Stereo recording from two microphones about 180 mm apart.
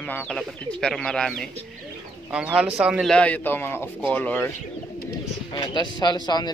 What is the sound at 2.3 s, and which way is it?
A man's voice, 5° right (ahead or behind).